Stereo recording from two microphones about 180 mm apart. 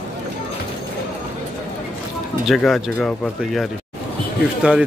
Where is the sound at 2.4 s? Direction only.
Centre (ahead or behind).